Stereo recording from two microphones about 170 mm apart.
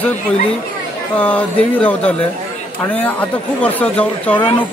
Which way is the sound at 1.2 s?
10° left (ahead or behind).